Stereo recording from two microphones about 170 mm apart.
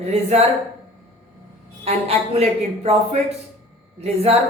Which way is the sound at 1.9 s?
35° right (ahead or behind).